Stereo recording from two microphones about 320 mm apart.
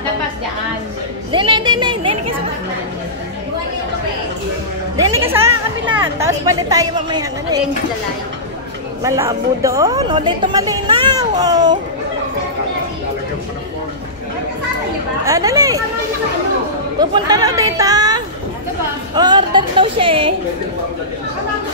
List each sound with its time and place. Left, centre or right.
1.3 s a woman's voice: centre
4.9 s a woman's voice: centre
9.0 s a woman's voice: centre
15.2 s a woman's voice: centre
17.0 s a woman's voice: centre